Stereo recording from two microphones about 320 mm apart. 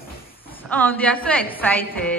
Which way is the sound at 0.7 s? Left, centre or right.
Centre.